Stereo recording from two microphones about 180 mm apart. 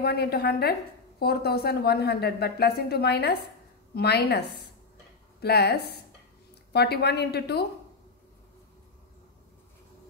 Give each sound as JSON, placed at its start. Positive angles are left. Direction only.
{"t": 0.0, "sound": "a woman's voice", "side_deg": 60}
{"t": 5.4, "sound": "a woman's voice", "side_deg": 65}